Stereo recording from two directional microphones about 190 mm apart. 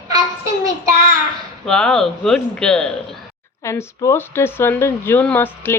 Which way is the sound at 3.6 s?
15° left (ahead or behind).